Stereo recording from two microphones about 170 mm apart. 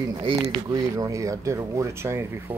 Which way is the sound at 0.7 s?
20° right (ahead or behind).